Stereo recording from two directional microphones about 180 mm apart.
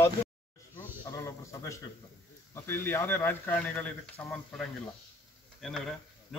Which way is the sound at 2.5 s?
15° left (ahead or behind).